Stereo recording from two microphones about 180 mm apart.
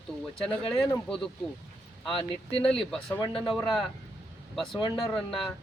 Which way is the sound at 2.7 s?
5° left (ahead or behind).